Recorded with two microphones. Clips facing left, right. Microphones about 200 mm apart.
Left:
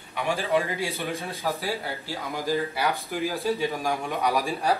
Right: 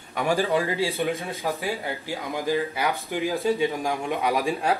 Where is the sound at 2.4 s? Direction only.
15° right (ahead or behind).